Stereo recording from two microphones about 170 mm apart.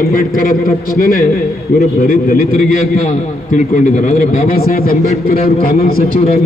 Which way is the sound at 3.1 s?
45° left (ahead or behind).